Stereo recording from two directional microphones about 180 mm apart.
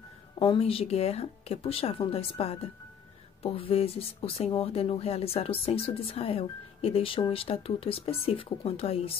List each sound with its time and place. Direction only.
0.4 s speech: 30° left (ahead or behind)